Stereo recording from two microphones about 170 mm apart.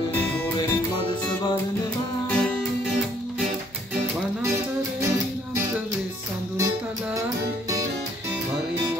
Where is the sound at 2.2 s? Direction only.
5° left (ahead or behind).